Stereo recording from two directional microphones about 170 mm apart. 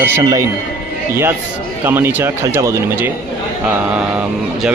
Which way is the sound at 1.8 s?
10° right (ahead or behind).